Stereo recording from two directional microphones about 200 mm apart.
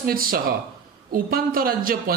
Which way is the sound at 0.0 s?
45° right (ahead or behind).